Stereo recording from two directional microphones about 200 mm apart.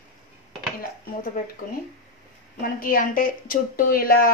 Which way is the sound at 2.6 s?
45° left (ahead or behind).